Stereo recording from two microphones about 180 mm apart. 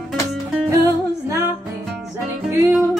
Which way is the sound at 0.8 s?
15° right (ahead or behind).